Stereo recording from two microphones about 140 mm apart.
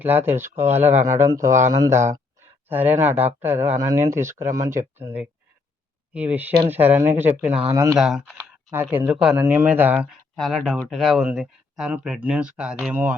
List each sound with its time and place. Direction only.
0.0 s speech: 15° right (ahead or behind)
7.9 s speech: 5° right (ahead or behind)
8.7 s speech: 15° right (ahead or behind)
10.1 s speech: centre (ahead or behind)